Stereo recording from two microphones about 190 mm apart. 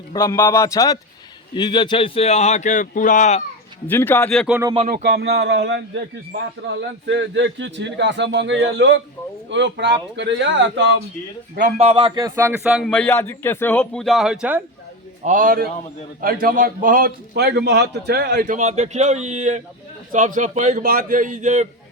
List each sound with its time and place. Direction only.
0.1 s a man's voice: 15° left (ahead or behind); by 3.4 s 40° left (ahead or behind)
3.8 s a man's voice: 10° left (ahead or behind)
4.9 s a man's voice: 55° right (ahead or behind)
11.8 s speech: 25° right (ahead or behind)
12.6 s speech: centre (ahead or behind)
15.2 s a man's voice: 45° right (ahead or behind)